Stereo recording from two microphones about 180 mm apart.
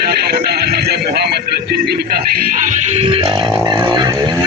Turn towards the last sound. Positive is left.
turn(degrees=-20)  # may be behind; listen again after turning